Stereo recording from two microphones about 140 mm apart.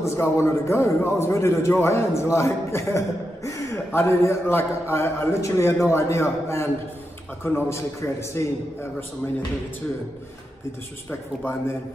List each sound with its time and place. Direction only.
0.0 s a man's voice: 20° left (ahead or behind)